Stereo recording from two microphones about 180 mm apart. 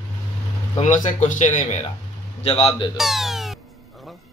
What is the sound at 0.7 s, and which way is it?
Speech, 40° left (ahead or behind).